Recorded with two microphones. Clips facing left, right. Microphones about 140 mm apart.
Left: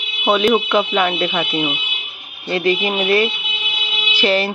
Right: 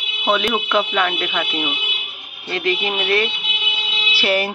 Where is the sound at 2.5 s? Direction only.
5° left (ahead or behind).